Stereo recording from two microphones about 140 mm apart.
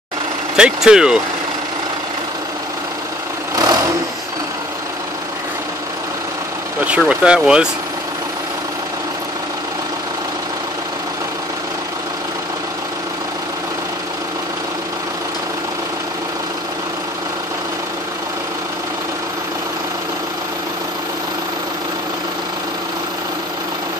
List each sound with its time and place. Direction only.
0.6 s speech: 5° right (ahead or behind)
3.5 s vehicle: 25° right (ahead or behind)
6.8 s speech: 10° right (ahead or behind)